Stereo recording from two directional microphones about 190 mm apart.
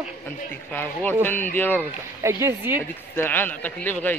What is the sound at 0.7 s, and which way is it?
Speech, 10° left (ahead or behind).